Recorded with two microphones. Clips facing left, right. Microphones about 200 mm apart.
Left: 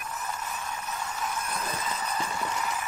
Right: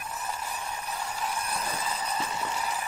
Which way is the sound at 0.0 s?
30° right (ahead or behind).